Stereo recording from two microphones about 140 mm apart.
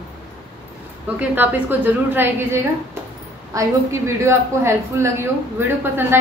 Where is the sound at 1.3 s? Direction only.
15° right (ahead or behind).